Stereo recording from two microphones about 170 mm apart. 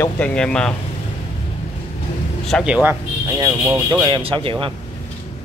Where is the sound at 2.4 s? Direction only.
Centre (ahead or behind); by 3.8 s 20° right (ahead or behind).